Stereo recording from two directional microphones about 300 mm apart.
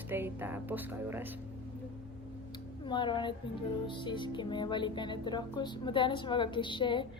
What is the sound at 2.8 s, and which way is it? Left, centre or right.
Music, centre.